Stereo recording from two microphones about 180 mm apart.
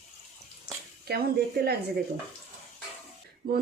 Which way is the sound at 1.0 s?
60° right (ahead or behind).